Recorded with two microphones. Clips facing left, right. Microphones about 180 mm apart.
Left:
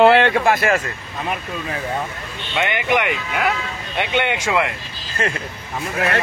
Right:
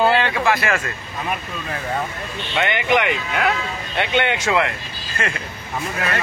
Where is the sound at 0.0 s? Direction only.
65° left (ahead or behind).